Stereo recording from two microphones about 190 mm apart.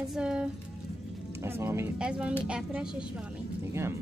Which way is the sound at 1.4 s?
15° right (ahead or behind).